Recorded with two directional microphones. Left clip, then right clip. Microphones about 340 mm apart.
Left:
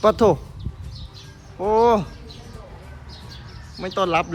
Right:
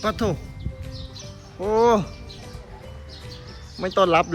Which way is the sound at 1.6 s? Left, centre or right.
Centre.